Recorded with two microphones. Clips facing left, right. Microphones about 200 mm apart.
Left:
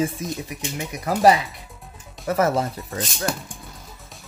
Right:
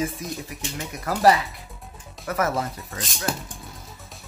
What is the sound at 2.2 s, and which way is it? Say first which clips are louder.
Speech: left 4 dB; 30° left (ahead or behind).